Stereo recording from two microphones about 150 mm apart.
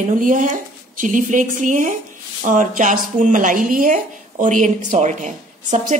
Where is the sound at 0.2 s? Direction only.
60° right (ahead or behind).